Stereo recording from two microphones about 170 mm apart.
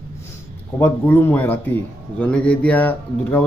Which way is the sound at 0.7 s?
15° left (ahead or behind).